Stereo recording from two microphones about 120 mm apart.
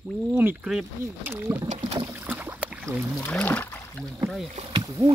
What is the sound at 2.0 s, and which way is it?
Boat, 15° right (ahead or behind).